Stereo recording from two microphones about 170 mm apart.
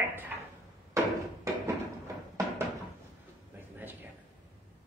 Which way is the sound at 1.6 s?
20° right (ahead or behind).